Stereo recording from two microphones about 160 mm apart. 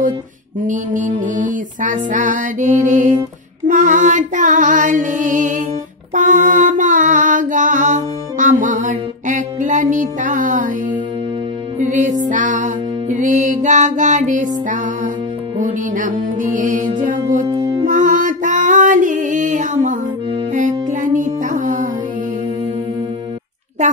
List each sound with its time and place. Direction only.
0.7 s music: 55° right (ahead or behind)
6.1 s mantra: 50° right (ahead or behind)
11.8 s music: 50° right (ahead or behind)
17.5 s music: 25° right (ahead or behind)
17.8 s music: 55° right (ahead or behind)